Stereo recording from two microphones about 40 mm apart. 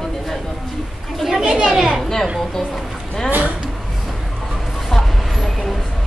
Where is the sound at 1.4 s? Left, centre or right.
Centre.